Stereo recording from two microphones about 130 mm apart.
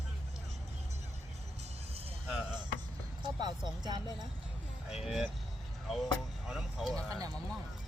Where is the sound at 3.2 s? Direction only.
35° right (ahead or behind).